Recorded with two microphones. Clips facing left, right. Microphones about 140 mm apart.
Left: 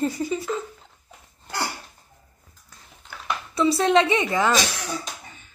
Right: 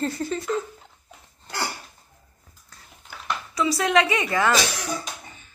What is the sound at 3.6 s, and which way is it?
Speech, 30° left (ahead or behind).